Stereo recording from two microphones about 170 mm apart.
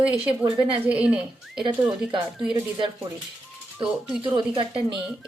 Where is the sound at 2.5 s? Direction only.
30° right (ahead or behind).